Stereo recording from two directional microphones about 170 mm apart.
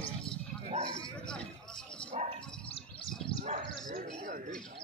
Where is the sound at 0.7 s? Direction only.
40° right (ahead or behind).